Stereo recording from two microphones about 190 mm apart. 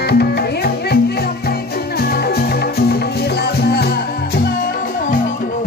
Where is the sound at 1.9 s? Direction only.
55° left (ahead or behind).